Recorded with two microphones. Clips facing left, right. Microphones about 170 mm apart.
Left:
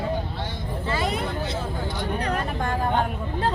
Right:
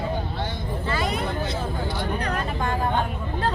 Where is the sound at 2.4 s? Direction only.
50° left (ahead or behind).